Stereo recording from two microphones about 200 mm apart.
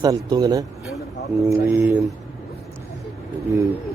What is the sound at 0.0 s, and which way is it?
Speech, 20° right (ahead or behind).